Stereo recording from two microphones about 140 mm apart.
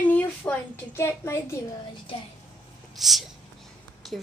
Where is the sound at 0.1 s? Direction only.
15° left (ahead or behind).